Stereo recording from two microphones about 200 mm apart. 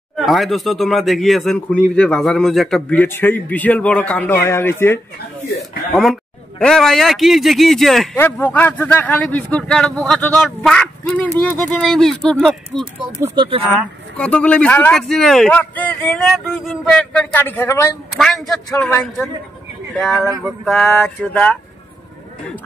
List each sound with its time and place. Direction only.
0.2 s a man's voice: centre (ahead or behind)
5.9 s a woman's voice: centre (ahead or behind)
8.2 s a man's voice: 10° left (ahead or behind)
13.2 s speech: 20° right (ahead or behind)
13.7 s a man's voice: 5° left (ahead or behind)
20.4 s a man's voice: centre (ahead or behind)